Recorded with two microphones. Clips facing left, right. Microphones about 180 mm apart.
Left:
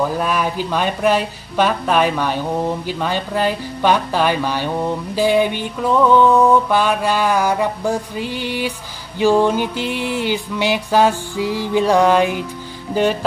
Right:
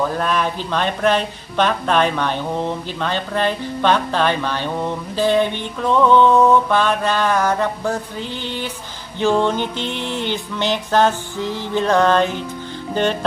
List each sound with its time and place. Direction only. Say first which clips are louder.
0.0 s speech: left 1 dB; 10° left (ahead or behind)